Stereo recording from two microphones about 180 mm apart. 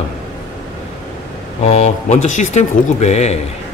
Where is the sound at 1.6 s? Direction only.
40° left (ahead or behind).